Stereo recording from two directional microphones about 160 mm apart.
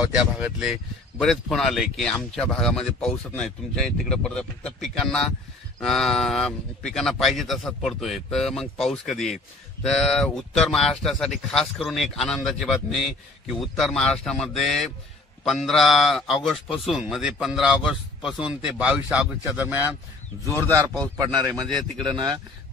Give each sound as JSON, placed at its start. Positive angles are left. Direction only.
{"t": 0.1, "sound": "speech", "side_deg": -5}
{"t": 21.2, "sound": "speech", "side_deg": -25}